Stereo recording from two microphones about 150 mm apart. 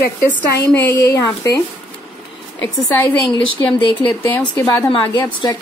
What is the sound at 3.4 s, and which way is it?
A woman's voice, 35° left (ahead or behind).